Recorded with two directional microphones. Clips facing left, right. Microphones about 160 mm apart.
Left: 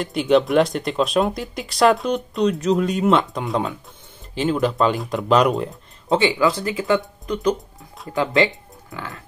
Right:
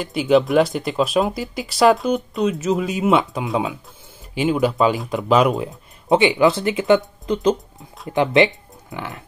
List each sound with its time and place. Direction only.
0.0 s speech: centre (ahead or behind)
6.0 s speech: 15° right (ahead or behind)